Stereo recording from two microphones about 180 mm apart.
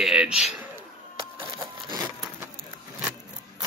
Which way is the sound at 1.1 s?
20° right (ahead or behind).